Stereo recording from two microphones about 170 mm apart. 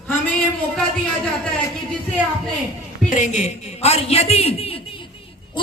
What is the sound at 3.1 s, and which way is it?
A man's voice, 45° left (ahead or behind).